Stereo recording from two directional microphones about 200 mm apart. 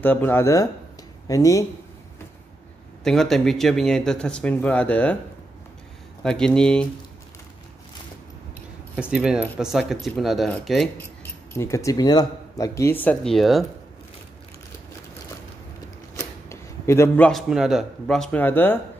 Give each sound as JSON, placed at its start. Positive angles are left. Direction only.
{"t": 0.0, "sound": "speech", "side_deg": 10}
{"t": 3.0, "sound": "speech", "side_deg": 0}
{"t": 6.2, "sound": "speech", "side_deg": 5}
{"t": 8.9, "sound": "speech", "side_deg": -5}
{"t": 11.5, "sound": "speech", "side_deg": 15}
{"t": 16.2, "sound": "speech", "side_deg": 15}